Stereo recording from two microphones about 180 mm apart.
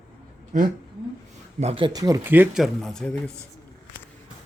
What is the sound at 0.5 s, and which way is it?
Speech, 45° right (ahead or behind).